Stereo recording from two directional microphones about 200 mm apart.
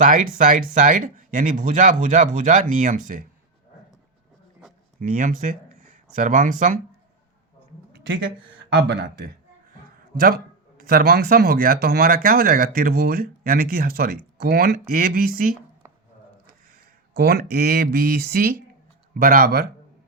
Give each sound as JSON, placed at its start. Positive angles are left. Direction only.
{"t": 0.0, "sound": "speech", "side_deg": -40}
{"t": 4.9, "sound": "speech", "side_deg": -45}
{"t": 7.9, "sound": "a sound", "side_deg": -60}
{"t": 8.7, "sound": "speech", "side_deg": -60}
{"t": 17.2, "sound": "speech", "side_deg": -50}